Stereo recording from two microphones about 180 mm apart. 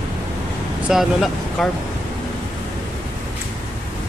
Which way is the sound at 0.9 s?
Centre (ahead or behind).